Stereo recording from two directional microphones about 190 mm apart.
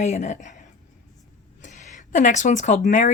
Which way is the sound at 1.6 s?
40° left (ahead or behind).